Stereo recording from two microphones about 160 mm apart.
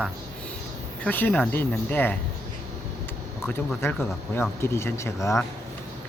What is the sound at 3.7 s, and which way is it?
Speech, 15° left (ahead or behind).